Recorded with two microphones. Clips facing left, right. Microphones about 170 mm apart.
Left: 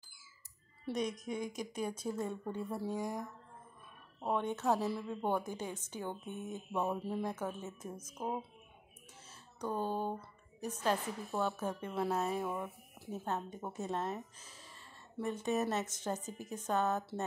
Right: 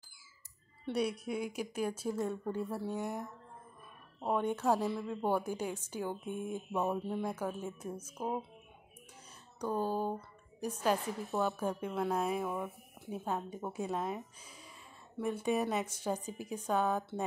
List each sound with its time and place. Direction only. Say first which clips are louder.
0.9 s speech: right 3 dB; 10° right (ahead or behind)
4.2 s speech: right 2 dB; 10° right (ahead or behind)
4.7 s speech: right 2 dB; 5° left (ahead or behind)
7.0 s speech: right 1 dB; 5° left (ahead or behind)
7.2 s speech: right 2 dB; 10° right (ahead or behind)
9.6 s speech: right 2 dB; 10° right (ahead or behind)
11.9 s speech: left 1 dB; 5° left (ahead or behind)
12.2 s speech: right 2 dB; 10° right (ahead or behind)